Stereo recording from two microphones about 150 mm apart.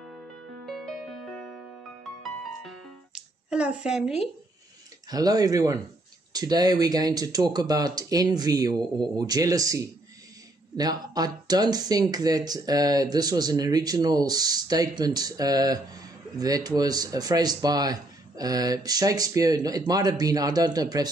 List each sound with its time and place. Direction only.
0.7 s music: centre (ahead or behind)
3.2 s a sound: 5° right (ahead or behind)
5.1 s speech: 25° right (ahead or behind)